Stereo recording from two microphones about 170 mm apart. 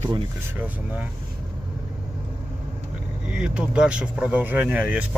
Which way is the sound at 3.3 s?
5° right (ahead or behind).